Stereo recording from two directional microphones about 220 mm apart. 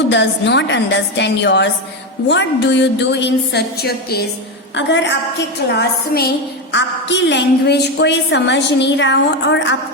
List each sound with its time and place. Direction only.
0.1 s a woman's voice: 55° left (ahead or behind)
6.7 s a woman's voice: 55° left (ahead or behind)